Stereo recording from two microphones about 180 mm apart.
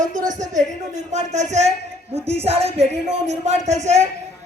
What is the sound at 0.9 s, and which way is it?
Music, 40° right (ahead or behind).